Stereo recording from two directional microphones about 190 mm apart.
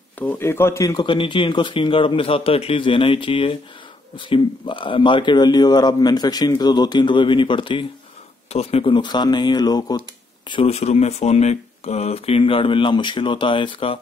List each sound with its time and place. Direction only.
0.2 s a man's voice: 10° left (ahead or behind)
10.5 s a man's voice: 30° left (ahead or behind)